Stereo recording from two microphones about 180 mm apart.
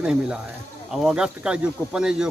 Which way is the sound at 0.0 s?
5° right (ahead or behind).